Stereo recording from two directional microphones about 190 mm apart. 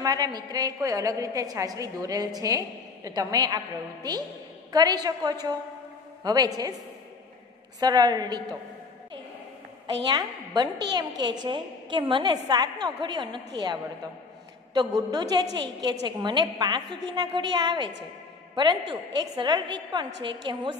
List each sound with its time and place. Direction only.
0.0 s a woman's voice: 20° right (ahead or behind)
7.8 s a woman's voice: 20° right (ahead or behind)
10.0 s a woman's voice: 20° right (ahead or behind)
14.7 s a woman's voice: 20° right (ahead or behind)